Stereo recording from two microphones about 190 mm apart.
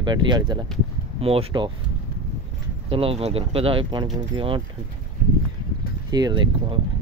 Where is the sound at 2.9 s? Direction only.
30° right (ahead or behind).